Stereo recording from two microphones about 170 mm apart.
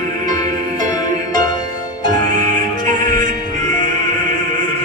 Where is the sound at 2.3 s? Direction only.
50° right (ahead or behind).